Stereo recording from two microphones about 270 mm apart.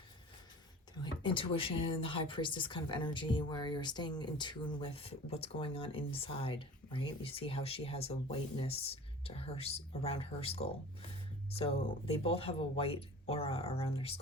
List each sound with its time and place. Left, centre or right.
1.0 s speech: centre